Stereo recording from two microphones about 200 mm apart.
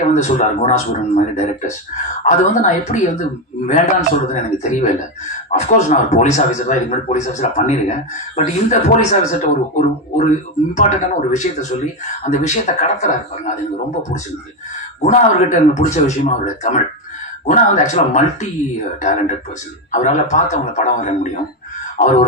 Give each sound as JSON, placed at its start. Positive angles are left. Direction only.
{"t": 0.0, "sound": "speech", "side_deg": 35}
{"t": 4.3, "sound": "speech", "side_deg": 35}
{"t": 15.0, "sound": "speech", "side_deg": 40}